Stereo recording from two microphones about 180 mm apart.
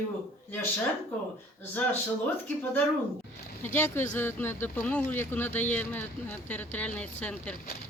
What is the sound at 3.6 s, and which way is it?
Speech, 10° left (ahead or behind).